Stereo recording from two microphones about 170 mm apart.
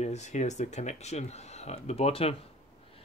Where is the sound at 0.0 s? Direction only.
40° left (ahead or behind).